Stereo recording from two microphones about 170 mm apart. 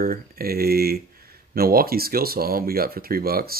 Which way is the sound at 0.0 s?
60° right (ahead or behind).